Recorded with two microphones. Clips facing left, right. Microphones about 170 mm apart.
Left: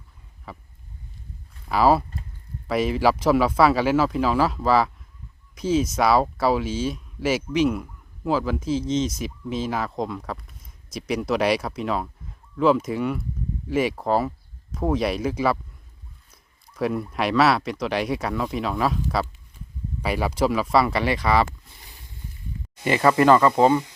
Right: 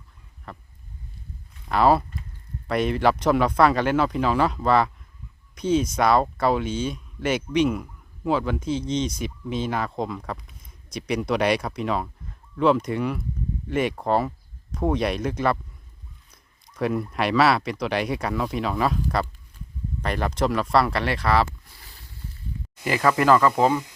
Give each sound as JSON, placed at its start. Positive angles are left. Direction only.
{"t": 0.5, "sound": "speech", "side_deg": 5}
{"t": 1.6, "sound": "speech", "side_deg": 0}
{"t": 21.7, "sound": "a sound", "side_deg": 20}
{"t": 22.8, "sound": "speech", "side_deg": 0}